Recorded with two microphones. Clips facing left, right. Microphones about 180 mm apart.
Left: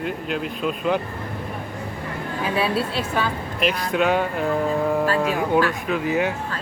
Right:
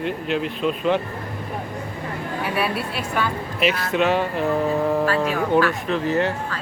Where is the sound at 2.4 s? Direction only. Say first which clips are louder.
Left 3 dB; 25° left (ahead or behind).